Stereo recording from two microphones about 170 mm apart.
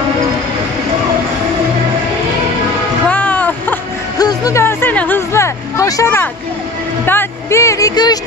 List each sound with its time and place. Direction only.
3.1 s a sound: 10° left (ahead or behind)
4.2 s music: 20° left (ahead or behind)
7.1 s speech: 15° left (ahead or behind)